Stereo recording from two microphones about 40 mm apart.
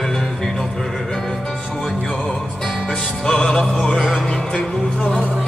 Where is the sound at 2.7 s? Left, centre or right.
Centre.